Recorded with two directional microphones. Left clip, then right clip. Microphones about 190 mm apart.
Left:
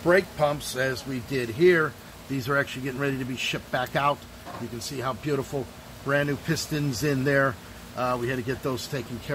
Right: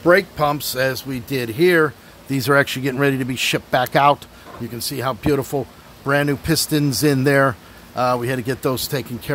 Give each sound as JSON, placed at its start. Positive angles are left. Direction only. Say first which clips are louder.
{"t": 0.0, "sound": "speech", "louder": "right 6 dB", "side_deg": -55}